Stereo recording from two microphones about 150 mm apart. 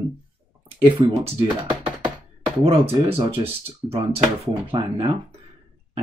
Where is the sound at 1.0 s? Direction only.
35° right (ahead or behind).